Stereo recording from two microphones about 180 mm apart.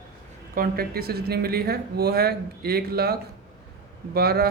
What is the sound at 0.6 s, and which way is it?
Speech, 55° right (ahead or behind).